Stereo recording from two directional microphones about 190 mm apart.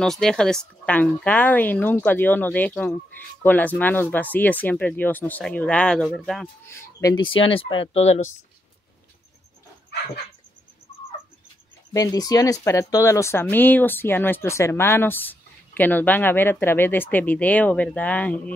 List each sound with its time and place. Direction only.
0.0 s speech: 5° left (ahead or behind)
6.7 s speech: 15° left (ahead or behind); by 8.2 s 35° left (ahead or behind)
11.9 s speech: 20° left (ahead or behind)